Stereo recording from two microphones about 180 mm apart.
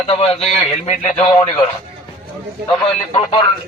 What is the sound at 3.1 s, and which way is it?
Speech, 25° left (ahead or behind).